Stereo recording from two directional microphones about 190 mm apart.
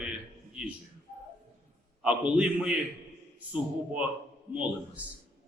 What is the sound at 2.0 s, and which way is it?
Speech, 5° right (ahead or behind).